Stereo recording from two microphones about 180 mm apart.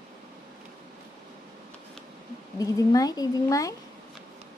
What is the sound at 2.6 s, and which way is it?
A woman's voice, 20° left (ahead or behind).